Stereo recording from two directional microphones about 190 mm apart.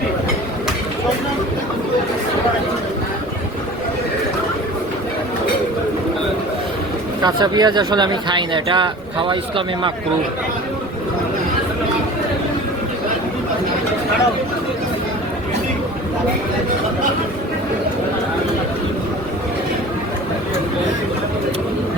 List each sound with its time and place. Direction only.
7.2 s speech: 20° right (ahead or behind)